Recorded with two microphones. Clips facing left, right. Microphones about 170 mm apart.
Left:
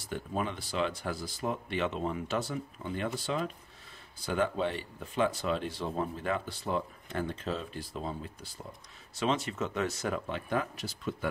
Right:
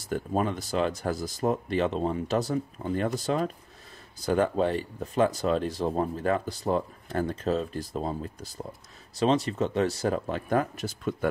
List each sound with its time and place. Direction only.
0.1 s speech: 40° right (ahead or behind)